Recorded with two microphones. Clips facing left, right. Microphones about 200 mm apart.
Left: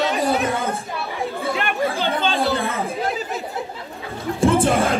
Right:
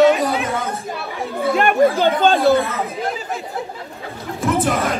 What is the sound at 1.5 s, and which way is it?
Chatter, 50° right (ahead or behind).